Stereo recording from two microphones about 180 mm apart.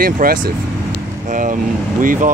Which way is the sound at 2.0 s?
50° right (ahead or behind).